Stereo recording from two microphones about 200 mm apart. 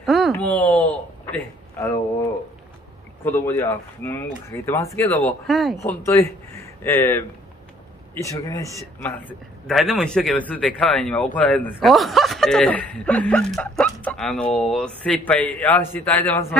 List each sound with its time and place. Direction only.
0.0 s a sound: centre (ahead or behind)
3.3 s speech: 10° left (ahead or behind)
5.9 s speech: 15° left (ahead or behind)
9.7 s speech: centre (ahead or behind)